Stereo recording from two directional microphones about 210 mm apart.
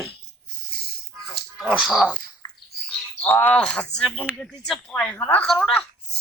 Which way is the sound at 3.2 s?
5° left (ahead or behind).